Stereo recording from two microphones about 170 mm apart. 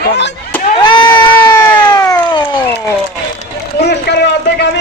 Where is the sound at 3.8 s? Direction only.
85° left.